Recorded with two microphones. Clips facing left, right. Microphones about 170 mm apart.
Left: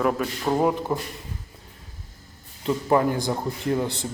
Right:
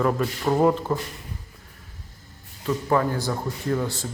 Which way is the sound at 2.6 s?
20° left (ahead or behind).